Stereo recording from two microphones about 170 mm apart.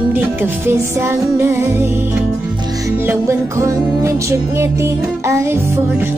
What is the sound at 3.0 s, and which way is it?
Music, 15° right (ahead or behind).